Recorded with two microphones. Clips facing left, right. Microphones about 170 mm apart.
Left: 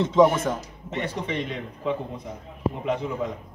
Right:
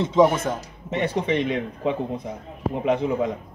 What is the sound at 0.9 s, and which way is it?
Speech, 70° right (ahead or behind).